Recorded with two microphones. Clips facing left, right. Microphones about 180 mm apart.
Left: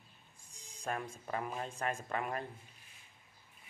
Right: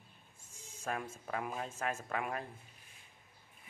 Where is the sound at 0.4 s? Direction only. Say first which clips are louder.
Even; 5° right (ahead or behind).